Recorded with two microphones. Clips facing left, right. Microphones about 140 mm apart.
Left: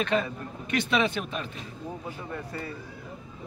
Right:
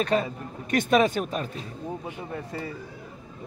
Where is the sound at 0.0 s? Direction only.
40° right (ahead or behind).